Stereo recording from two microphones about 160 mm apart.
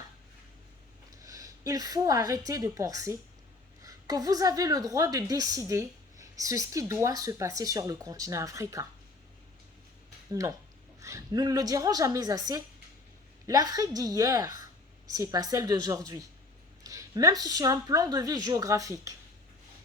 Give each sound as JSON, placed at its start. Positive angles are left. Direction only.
{"t": 1.1, "sound": "a woman's voice", "side_deg": -20}
{"t": 11.0, "sound": "a woman's voice", "side_deg": -20}